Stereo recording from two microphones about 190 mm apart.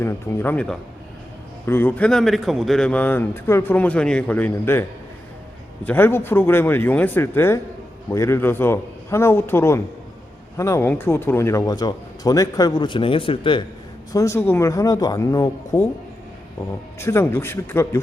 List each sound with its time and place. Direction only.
0.0 s a man's voice: 10° left (ahead or behind)
17.0 s a man's voice: 15° left (ahead or behind)